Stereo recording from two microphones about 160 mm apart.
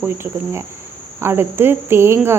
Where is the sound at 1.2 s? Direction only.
15° right (ahead or behind).